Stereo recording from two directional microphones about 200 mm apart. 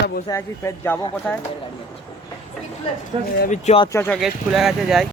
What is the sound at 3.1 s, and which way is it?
Speech, 25° right (ahead or behind).